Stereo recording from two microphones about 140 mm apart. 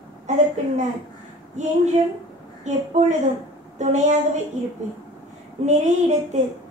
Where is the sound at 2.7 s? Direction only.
55° right (ahead or behind).